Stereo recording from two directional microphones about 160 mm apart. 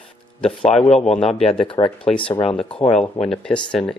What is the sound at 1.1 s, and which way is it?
Speech, 40° left (ahead or behind).